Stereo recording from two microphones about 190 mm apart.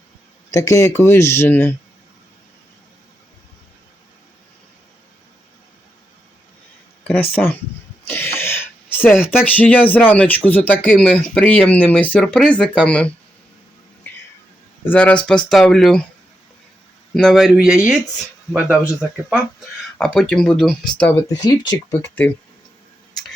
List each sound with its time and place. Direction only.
0.5 s speech: 15° left (ahead or behind)
8.0 s a sound: 10° left (ahead or behind)
9.5 s speech: 10° left (ahead or behind)
14.8 s speech: 5° left (ahead or behind)
17.2 s speech: centre (ahead or behind)
21.0 s speech: 15° left (ahead or behind)